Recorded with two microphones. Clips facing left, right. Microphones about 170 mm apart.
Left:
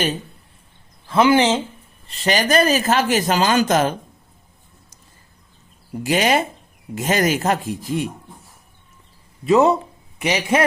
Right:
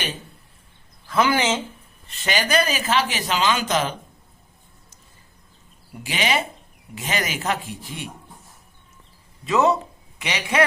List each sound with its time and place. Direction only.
1.0 s speech: 25° left (ahead or behind); by 3.9 s 45° left (ahead or behind)
6.0 s speech: 45° left (ahead or behind)
9.5 s a man's voice: 35° left (ahead or behind)